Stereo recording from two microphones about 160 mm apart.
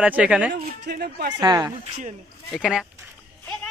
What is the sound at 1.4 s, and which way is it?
Speech, 25° right (ahead or behind).